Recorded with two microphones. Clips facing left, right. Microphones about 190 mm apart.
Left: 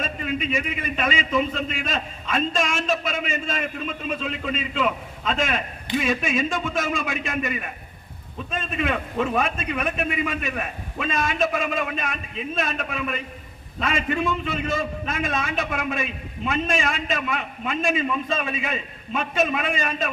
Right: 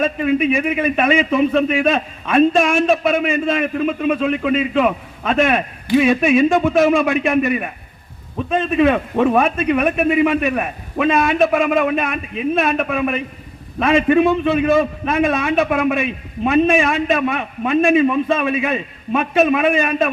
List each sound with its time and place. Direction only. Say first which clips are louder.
0.0 s a man's voice: right 11 dB; 60° right (ahead or behind)